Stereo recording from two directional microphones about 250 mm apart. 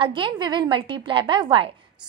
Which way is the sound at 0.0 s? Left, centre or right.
Centre.